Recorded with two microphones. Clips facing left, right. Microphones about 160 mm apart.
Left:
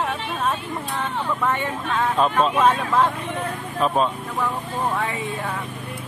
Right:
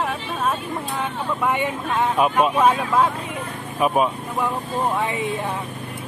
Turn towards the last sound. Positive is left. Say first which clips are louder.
# right 3 dB
turn(degrees=-20)  # may be behind; listen again after turning